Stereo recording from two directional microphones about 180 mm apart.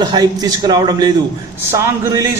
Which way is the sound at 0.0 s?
20° right (ahead or behind).